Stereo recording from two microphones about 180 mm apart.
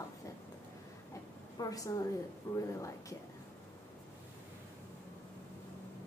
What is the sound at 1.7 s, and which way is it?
A woman's voice, 20° left (ahead or behind).